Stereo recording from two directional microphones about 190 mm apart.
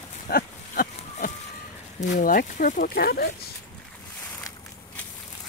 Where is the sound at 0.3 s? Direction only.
50° left (ahead or behind).